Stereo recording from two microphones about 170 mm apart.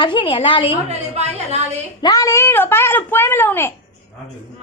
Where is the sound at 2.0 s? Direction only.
20° left (ahead or behind).